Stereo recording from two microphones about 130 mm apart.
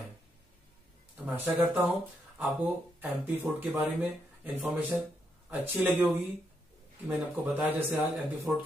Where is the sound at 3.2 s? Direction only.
15° right (ahead or behind).